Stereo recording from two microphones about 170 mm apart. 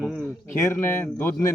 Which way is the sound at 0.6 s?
15° left (ahead or behind).